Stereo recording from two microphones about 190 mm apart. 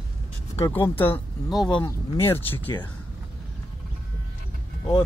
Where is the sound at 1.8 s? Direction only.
15° left (ahead or behind).